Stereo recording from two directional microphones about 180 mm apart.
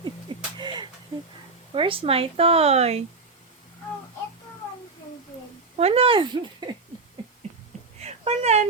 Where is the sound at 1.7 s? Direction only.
30° right (ahead or behind).